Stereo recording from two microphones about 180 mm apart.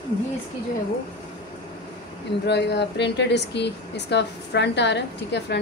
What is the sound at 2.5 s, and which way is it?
Speech, 70° left (ahead or behind).